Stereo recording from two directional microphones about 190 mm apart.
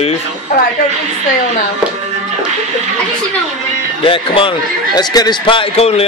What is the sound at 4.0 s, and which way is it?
Speech, 25° left (ahead or behind).